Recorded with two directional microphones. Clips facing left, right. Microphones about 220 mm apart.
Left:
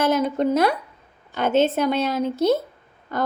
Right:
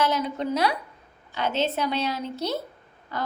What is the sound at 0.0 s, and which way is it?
A woman's voice, 50° left (ahead or behind).